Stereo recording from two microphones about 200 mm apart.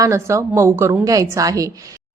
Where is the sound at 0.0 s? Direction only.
15° right (ahead or behind).